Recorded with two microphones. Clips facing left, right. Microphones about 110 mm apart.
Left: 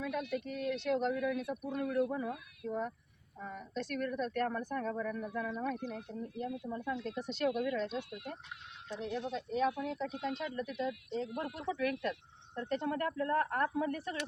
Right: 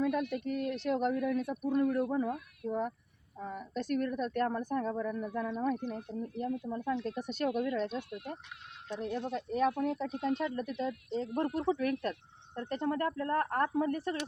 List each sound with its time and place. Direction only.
0.0 s speech: 45° right (ahead or behind)